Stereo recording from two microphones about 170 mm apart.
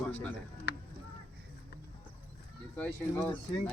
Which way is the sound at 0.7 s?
80° left.